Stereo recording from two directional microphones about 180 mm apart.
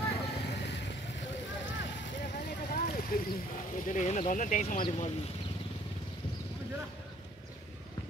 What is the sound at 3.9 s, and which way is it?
Speech, 40° left (ahead or behind).